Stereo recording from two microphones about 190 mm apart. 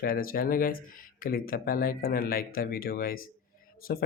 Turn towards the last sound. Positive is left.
turn(degrees=50)  # may be behind; listen again after turning